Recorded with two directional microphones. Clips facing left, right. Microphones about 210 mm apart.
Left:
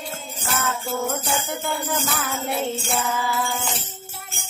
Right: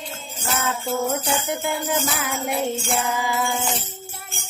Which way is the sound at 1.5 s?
20° right (ahead or behind).